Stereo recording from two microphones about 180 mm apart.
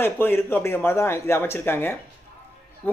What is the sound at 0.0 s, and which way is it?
Speech, 10° left (ahead or behind).